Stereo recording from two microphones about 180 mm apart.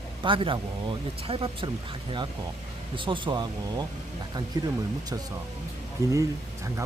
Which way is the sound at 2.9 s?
30° right (ahead or behind).